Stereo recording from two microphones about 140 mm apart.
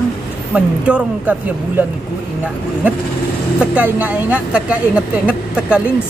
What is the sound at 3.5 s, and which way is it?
A woman's voice, 10° right (ahead or behind).